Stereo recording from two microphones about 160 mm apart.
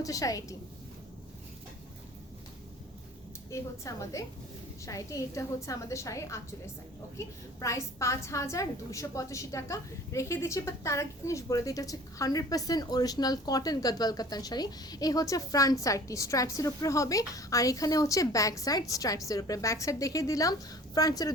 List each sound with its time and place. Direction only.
0.0 s a woman's voice: 20° left (ahead or behind)
3.5 s a woman's voice: 20° left (ahead or behind)